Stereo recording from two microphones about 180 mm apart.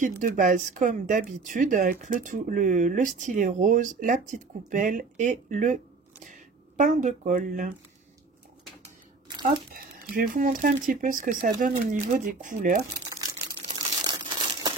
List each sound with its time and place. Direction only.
0.0 s speech: 50° right (ahead or behind)
9.8 s speech: 50° right (ahead or behind)
14.0 s crumpling: 20° right (ahead or behind)